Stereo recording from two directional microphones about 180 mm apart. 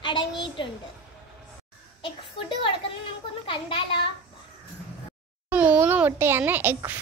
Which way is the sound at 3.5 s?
30° left (ahead or behind).